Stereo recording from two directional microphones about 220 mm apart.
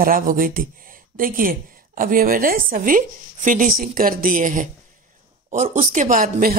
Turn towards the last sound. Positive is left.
turn(degrees=-40)  # may be behind; listen again after turning